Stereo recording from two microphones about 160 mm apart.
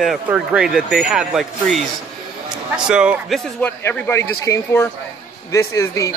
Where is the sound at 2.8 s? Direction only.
5° right (ahead or behind).